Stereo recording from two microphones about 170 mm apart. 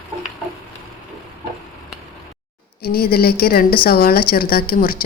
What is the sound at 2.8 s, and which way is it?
A woman's voice, 60° left (ahead or behind).